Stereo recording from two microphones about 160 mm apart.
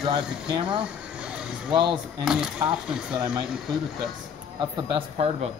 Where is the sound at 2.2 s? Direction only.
5° right (ahead or behind).